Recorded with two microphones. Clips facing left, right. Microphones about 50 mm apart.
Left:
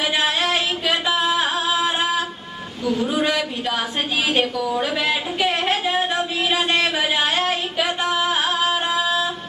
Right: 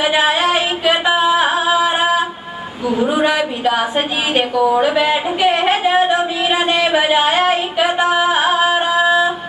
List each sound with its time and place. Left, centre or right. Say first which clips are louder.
0.0 s singing: right 6 dB; centre
3.0 s a man's voice: right 7 dB; right
4.6 s a sound: right 9 dB; right